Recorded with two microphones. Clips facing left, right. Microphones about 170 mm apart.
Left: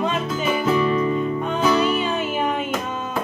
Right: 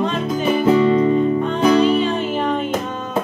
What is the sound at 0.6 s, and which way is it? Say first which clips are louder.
Music: right 6 dB; 25° right (ahead or behind).